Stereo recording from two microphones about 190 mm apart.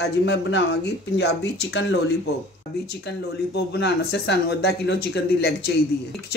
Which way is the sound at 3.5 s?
60° left (ahead or behind).